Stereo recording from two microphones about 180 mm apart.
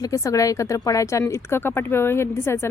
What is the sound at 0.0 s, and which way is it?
A woman's voice, 20° left (ahead or behind).